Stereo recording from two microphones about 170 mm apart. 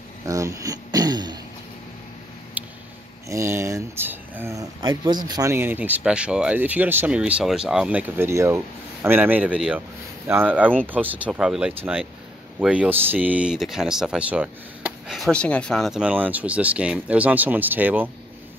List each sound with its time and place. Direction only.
0.3 s throat clearing: 20° right (ahead or behind)
2.6 s a sound: 10° right (ahead or behind)
3.3 s speech: 15° right (ahead or behind)